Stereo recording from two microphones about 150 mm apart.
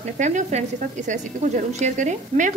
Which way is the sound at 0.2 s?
50° right (ahead or behind).